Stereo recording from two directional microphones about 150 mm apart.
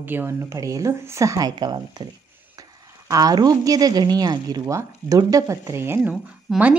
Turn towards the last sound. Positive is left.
turn(degrees=0)  # may be behind; listen again after turning